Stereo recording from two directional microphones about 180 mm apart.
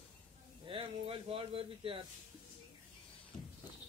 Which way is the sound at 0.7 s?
30° right (ahead or behind).